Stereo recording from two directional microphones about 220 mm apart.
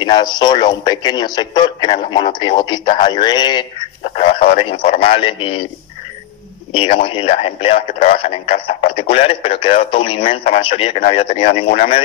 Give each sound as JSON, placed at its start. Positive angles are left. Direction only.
{"t": 0.0, "sound": "speech", "side_deg": 20}
{"t": 6.7, "sound": "speech", "side_deg": 25}